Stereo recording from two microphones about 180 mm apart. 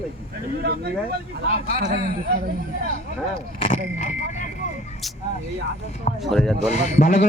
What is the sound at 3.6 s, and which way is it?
Speech, 45° left (ahead or behind).